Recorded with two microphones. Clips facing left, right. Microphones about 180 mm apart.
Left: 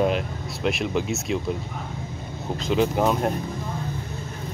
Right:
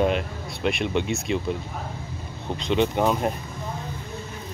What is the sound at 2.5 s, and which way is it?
Speech, centre (ahead or behind).